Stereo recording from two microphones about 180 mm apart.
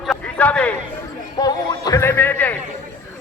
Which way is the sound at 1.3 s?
20° left (ahead or behind).